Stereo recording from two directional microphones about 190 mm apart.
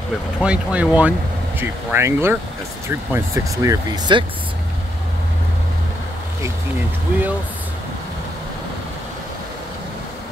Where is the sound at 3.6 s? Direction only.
20° right (ahead or behind).